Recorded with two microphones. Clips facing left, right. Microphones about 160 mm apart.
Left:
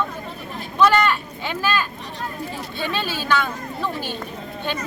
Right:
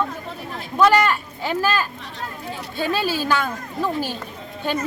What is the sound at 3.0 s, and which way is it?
Speech, 40° right (ahead or behind).